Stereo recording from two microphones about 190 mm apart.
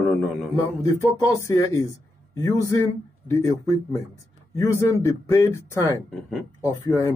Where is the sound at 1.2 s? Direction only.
15° left (ahead or behind).